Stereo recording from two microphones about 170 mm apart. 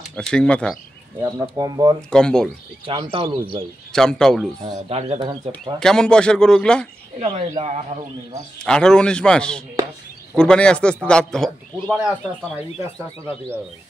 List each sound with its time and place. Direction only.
0.1 s a man's voice: 5° left (ahead or behind)
1.4 s speech: 25° right (ahead or behind)
2.0 s a man's voice: 5° left (ahead or behind)
2.9 s speech: 35° right (ahead or behind)
3.9 s a man's voice: 5° left (ahead or behind)
4.6 s speech: 35° right (ahead or behind)
5.8 s a man's voice: 5° left (ahead or behind)
7.2 s speech: 35° right (ahead or behind)
8.5 s a man's voice: 5° left (ahead or behind)